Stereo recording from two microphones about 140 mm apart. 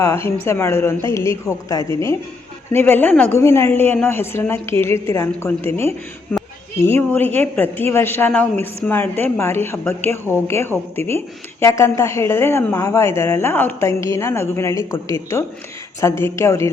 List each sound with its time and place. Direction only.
0.0 s a woman's voice: 20° left (ahead or behind)
6.3 s a sound: 5° left (ahead or behind)
6.7 s a woman's voice: 15° left (ahead or behind)